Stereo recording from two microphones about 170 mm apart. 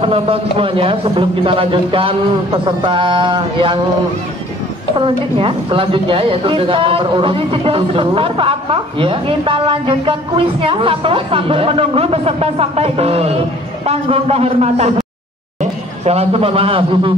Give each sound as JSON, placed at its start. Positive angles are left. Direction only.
{"t": 0.0, "sound": "a woman's voice", "side_deg": -35}
{"t": 4.9, "sound": "a woman's voice", "side_deg": -30}